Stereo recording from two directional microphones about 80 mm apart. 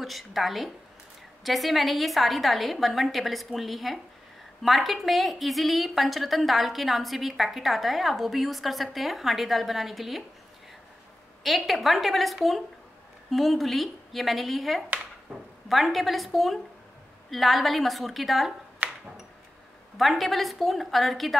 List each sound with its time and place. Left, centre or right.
0.0 s a woman's voice: centre
11.4 s a woman's voice: centre
18.8 s a sound: right
20.0 s a woman's voice: centre